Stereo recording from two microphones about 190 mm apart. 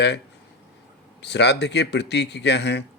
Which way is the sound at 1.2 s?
65° left (ahead or behind).